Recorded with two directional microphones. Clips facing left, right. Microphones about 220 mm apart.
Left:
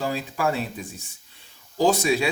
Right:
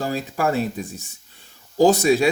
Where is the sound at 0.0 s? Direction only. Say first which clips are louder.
Right 2 dB; 45° right (ahead or behind).